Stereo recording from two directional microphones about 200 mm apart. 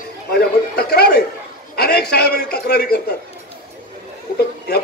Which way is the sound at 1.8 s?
50° left (ahead or behind).